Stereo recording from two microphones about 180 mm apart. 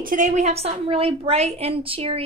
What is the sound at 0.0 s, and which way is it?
A woman's voice, 45° right (ahead or behind).